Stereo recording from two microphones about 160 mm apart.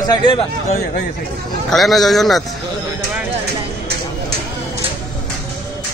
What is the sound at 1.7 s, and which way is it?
Speech, centre (ahead or behind).